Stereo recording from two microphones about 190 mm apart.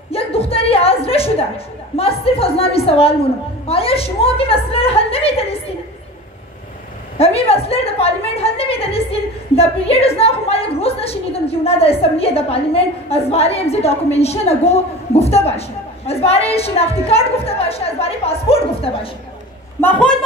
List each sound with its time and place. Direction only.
0.1 s a sound: 30° left (ahead or behind)
2.0 s a woman's voice: 30° left (ahead or behind)
7.2 s a woman's voice: 30° left (ahead or behind)
19.8 s a woman's voice: 5° left (ahead or behind)